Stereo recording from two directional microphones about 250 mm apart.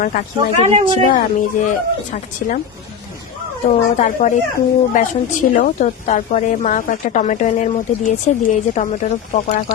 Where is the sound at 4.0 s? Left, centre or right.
Left.